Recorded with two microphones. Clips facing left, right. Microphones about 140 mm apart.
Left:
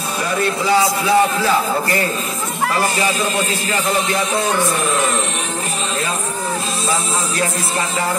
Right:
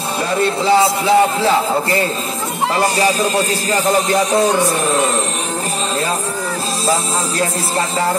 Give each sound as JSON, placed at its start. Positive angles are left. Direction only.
{"t": 0.7, "sound": "a man's voice", "side_deg": -25}
{"t": 2.7, "sound": "music", "side_deg": -35}